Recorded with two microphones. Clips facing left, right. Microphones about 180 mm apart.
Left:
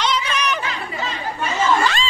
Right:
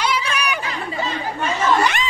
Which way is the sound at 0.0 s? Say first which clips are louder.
Even; 10° right (ahead or behind).